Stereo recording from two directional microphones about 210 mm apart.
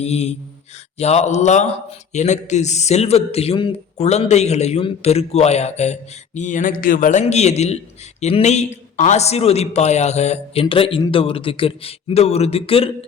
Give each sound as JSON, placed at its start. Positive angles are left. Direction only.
{"t": 0.0, "sound": "a man's voice", "side_deg": 30}